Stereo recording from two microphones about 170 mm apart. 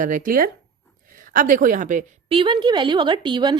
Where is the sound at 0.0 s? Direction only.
50° right (ahead or behind).